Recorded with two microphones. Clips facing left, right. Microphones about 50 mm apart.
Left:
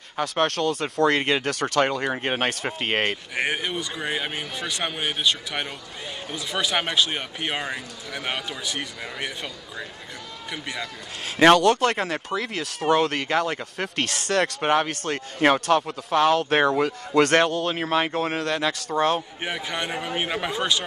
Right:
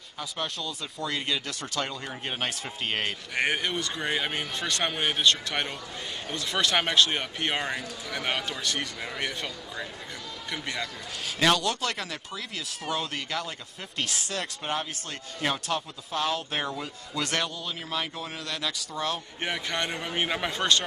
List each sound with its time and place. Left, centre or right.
0.2 s speech: left
3.3 s a man's voice: centre
11.2 s a man's voice: left
19.4 s speech: centre